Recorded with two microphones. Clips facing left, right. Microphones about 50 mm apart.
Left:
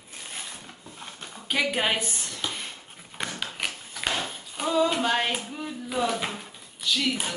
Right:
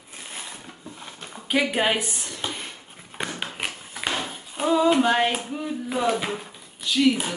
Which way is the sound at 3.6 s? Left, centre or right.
Centre.